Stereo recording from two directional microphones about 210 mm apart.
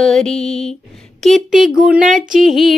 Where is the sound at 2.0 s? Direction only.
40° right (ahead or behind).